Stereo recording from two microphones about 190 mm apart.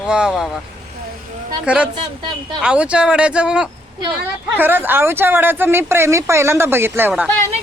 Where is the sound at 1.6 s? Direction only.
5° right (ahead or behind).